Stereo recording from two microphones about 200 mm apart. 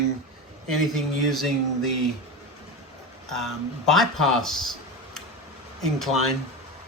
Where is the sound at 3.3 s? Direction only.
Centre (ahead or behind).